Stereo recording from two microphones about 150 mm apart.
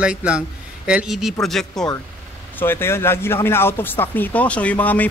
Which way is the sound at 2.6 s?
15° left (ahead or behind).